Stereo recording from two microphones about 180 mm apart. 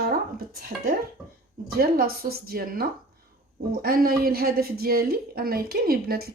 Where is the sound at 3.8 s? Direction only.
55° right (ahead or behind).